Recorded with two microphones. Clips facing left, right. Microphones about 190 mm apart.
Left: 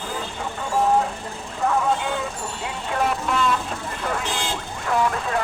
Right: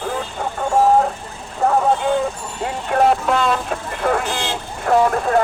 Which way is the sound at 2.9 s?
55° right (ahead or behind).